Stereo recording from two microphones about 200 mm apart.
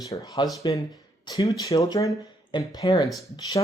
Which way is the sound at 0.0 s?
15° left (ahead or behind).